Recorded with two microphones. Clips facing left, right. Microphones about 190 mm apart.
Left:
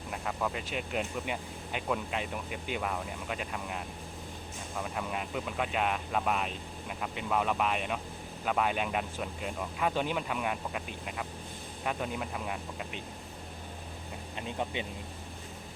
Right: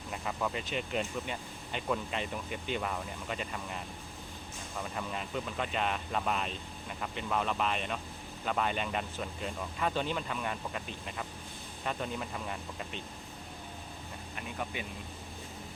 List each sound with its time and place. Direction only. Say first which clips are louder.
0.1 s speech: left 1 dB; centre (ahead or behind)
14.3 s speech: left 4 dB; 25° left (ahead or behind)